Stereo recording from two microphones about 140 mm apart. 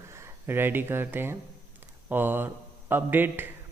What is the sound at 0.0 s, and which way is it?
A man's voice, 20° right (ahead or behind).